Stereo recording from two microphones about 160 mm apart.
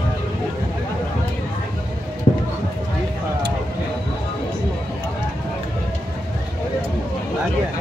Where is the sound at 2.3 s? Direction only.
40° left (ahead or behind).